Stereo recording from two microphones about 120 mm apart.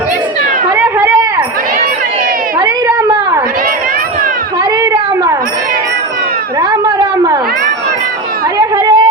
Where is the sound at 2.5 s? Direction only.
30° right (ahead or behind).